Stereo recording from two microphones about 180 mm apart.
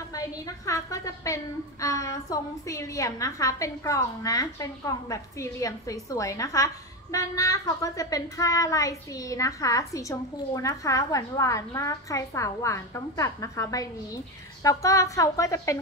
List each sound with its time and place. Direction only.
0.1 s a woman's voice: 20° left (ahead or behind)